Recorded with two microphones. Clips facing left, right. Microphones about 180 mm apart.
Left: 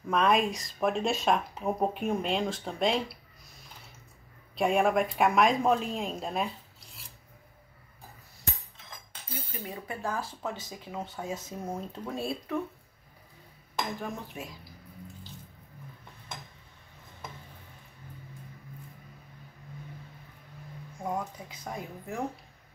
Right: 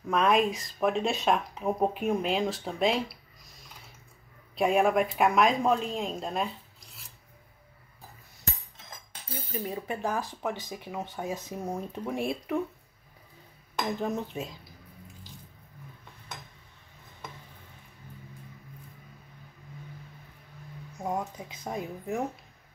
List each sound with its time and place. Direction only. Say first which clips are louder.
0.1 s speech: right 1 dB; centre (ahead or behind)
4.6 s speech: right 1 dB; centre (ahead or behind)
9.7 s speech: right 3 dB; 20° right (ahead or behind)
13.9 s speech: right 6 dB; 20° right (ahead or behind)
21.0 s speech: right 2 dB; 20° right (ahead or behind)